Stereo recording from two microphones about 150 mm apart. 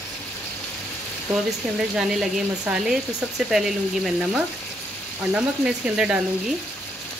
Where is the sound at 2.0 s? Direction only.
5° right (ahead or behind).